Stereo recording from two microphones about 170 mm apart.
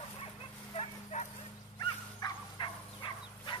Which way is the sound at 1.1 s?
45° left (ahead or behind).